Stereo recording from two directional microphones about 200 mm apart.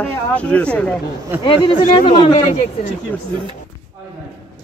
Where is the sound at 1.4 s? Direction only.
25° left (ahead or behind).